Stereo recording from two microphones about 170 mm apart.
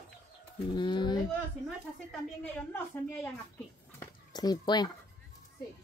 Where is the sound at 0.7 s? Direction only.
25° left (ahead or behind).